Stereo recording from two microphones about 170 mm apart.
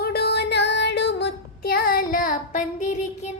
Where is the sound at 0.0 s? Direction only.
70° left (ahead or behind).